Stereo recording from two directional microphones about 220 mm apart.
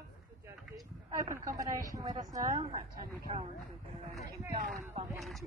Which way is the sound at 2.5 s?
30° right (ahead or behind).